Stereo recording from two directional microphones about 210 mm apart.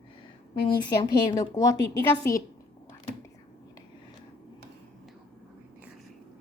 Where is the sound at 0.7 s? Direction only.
20° left (ahead or behind).